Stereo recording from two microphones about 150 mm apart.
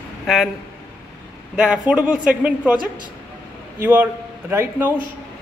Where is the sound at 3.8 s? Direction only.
15° right (ahead or behind).